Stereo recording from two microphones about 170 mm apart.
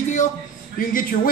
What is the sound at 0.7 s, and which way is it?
Speech, 55° left (ahead or behind).